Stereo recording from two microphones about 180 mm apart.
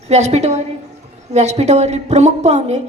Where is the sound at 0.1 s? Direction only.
40° right (ahead or behind).